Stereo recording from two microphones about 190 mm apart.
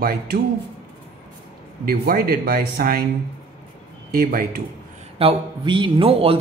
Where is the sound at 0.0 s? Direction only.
50° right (ahead or behind).